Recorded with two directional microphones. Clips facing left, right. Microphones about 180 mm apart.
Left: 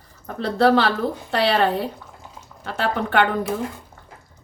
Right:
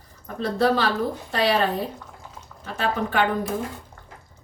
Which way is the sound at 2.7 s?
70° left (ahead or behind).